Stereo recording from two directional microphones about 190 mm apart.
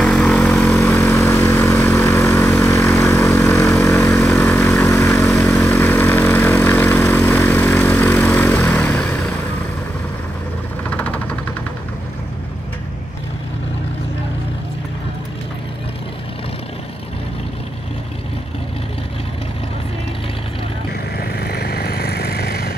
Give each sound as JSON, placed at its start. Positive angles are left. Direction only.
{"t": 0.0, "sound": "vehicle", "side_deg": 5}
{"t": 0.7, "sound": "vehicle", "side_deg": 15}
{"t": 10.9, "sound": "a sound", "side_deg": 10}
{"t": 21.2, "sound": "vehicle", "side_deg": 55}